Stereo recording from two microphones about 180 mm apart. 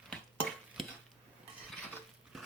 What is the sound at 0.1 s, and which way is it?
Stir, 5° left (ahead or behind).